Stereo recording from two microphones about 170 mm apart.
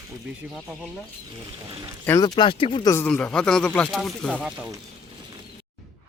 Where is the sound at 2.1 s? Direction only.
25° left (ahead or behind).